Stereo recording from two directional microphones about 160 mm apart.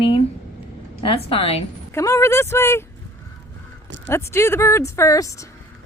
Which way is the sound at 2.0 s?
20° left (ahead or behind).